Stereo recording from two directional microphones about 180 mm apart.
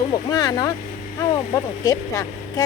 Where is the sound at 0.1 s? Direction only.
20° left (ahead or behind).